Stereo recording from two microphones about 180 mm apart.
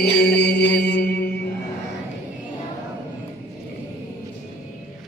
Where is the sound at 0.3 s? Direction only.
65° left (ahead or behind).